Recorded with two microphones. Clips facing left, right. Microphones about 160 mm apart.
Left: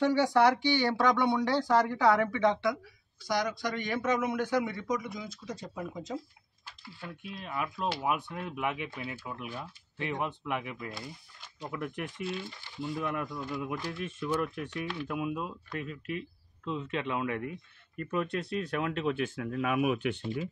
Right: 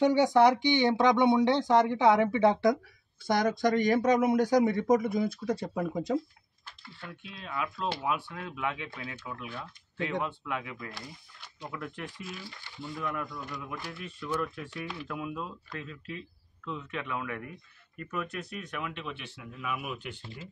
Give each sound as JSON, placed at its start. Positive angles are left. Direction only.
{"t": 0.0, "sound": "speech", "side_deg": -15}
{"t": 6.8, "sound": "speech", "side_deg": 10}
{"t": 12.2, "sound": "speech", "side_deg": 30}
{"t": 14.7, "sound": "speech", "side_deg": 0}
{"t": 15.0, "sound": "speech", "side_deg": 15}
{"t": 18.9, "sound": "speech", "side_deg": 45}
{"t": 19.4, "sound": "speech", "side_deg": 60}